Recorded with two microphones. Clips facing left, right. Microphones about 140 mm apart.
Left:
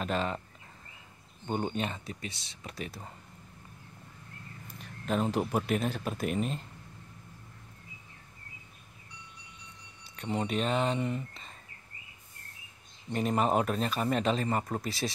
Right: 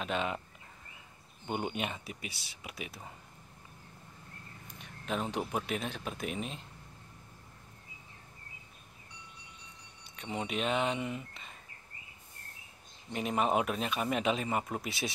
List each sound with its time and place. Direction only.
0.0 s speech: centre (ahead or behind)
1.5 s speech: 10° right (ahead or behind)
4.6 s speech: centre (ahead or behind)
10.1 s speech: 5° right (ahead or behind)
13.1 s speech: 5° right (ahead or behind)